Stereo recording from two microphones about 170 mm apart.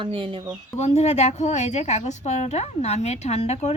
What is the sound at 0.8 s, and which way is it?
A woman's voice, 40° left (ahead or behind).